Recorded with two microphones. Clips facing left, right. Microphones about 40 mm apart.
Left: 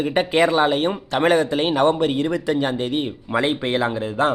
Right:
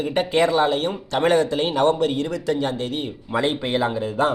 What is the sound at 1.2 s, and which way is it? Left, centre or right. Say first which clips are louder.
Speech: left 1 dB; centre.